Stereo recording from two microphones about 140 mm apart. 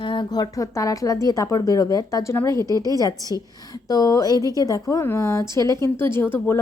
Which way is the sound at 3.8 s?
25° left (ahead or behind).